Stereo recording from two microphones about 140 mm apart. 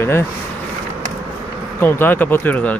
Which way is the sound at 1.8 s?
15° left (ahead or behind).